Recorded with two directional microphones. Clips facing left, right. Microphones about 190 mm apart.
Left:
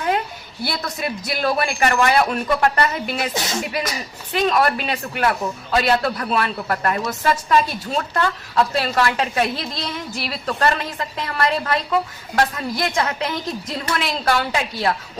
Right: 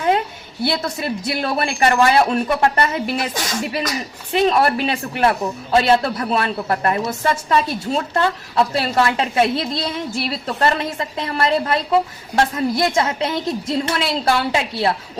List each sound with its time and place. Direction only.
0.6 s a woman's voice: 25° right (ahead or behind)
3.2 s speech: 25° left (ahead or behind)
4.3 s a woman's voice: 30° right (ahead or behind)